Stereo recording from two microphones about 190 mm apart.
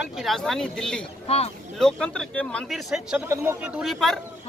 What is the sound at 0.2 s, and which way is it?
Bell, centre (ahead or behind).